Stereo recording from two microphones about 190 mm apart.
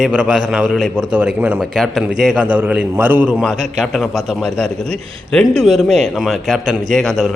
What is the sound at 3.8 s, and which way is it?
A man's voice, centre (ahead or behind).